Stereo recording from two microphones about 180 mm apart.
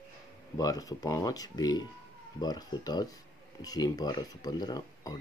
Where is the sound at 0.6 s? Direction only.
20° left (ahead or behind).